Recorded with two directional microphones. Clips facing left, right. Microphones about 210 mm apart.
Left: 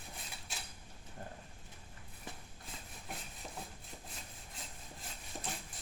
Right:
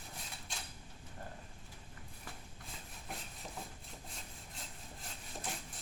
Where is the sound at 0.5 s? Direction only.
5° left (ahead or behind).